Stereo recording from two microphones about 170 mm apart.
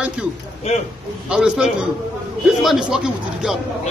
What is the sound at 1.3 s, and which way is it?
A man's voice, 5° right (ahead or behind).